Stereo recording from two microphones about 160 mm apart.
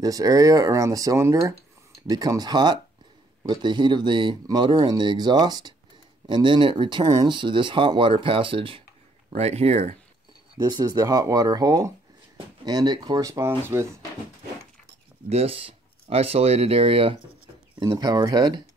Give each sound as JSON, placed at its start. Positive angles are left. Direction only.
{"t": 0.0, "sound": "speech", "side_deg": -25}
{"t": 10.6, "sound": "speech", "side_deg": -25}
{"t": 15.2, "sound": "speech", "side_deg": -40}
{"t": 17.8, "sound": "speech", "side_deg": -25}